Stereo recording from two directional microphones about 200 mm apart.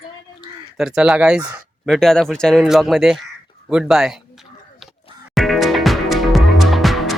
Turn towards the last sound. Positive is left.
turn(degrees=0)  # may be behind; listen again after turning